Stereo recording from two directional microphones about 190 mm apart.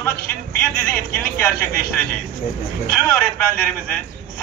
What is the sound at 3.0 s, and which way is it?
Speech, 10° left (ahead or behind).